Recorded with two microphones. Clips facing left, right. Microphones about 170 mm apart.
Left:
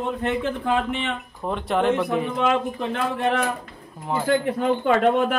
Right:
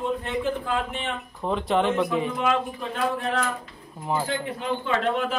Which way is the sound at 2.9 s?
70° left (ahead or behind).